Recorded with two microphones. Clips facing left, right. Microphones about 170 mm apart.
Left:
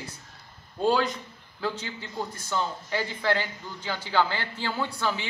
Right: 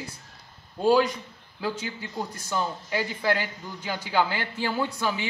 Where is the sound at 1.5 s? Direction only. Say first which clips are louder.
Right 1 dB; 10° right (ahead or behind).